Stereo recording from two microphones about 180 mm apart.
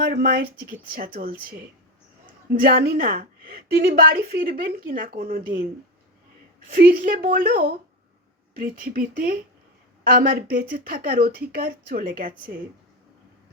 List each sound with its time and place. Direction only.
0.0 s speech: 55° right (ahead or behind)
6.7 s speech: 55° right (ahead or behind)